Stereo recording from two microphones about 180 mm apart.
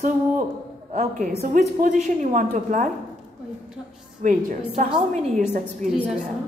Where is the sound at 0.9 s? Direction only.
40° right (ahead or behind).